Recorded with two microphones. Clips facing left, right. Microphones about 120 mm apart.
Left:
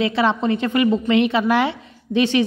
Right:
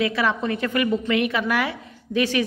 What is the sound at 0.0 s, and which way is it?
A woman's voice, 25° left (ahead or behind).